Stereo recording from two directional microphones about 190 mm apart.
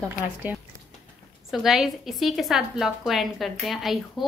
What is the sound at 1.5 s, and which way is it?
A woman's voice, centre (ahead or behind).